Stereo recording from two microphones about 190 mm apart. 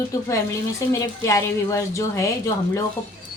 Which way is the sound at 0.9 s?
15° left (ahead or behind).